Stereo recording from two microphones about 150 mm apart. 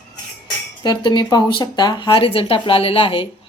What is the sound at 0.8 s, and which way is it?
Speech, 30° left (ahead or behind).